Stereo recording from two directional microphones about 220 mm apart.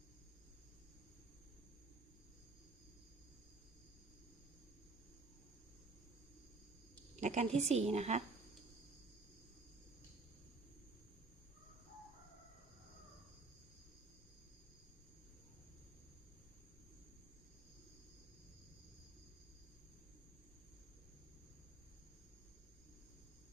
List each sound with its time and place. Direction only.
7.2 s a woman's voice: 30° right (ahead or behind)